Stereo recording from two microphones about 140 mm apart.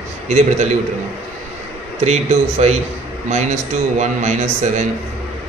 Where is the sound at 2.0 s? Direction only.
50° right (ahead or behind).